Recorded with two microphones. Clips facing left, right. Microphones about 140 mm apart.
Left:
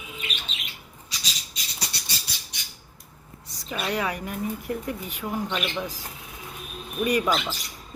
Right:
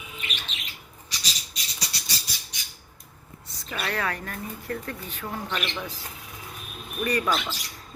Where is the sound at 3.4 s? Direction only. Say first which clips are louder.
Left 3 dB; 10° left (ahead or behind).